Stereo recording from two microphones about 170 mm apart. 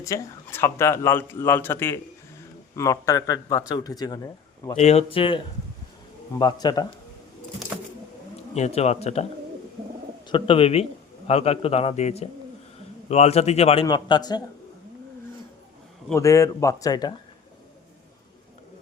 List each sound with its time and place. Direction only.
0.0 s speech: 15° left (ahead or behind)
4.7 s a man's voice: 40° left (ahead or behind)
6.4 s speech: 25° left (ahead or behind)
8.5 s a man's voice: 40° left (ahead or behind)
10.2 s a man's voice: 30° left (ahead or behind)
13.8 s speech: 25° left (ahead or behind)
16.1 s speech: 20° left (ahead or behind)